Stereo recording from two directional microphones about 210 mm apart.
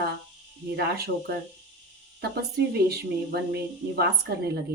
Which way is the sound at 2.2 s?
50° right (ahead or behind).